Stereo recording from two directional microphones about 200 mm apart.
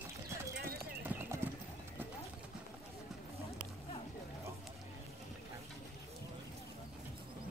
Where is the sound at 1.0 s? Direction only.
10° right (ahead or behind).